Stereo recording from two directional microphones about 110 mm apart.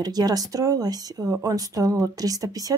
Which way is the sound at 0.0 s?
35° right (ahead or behind).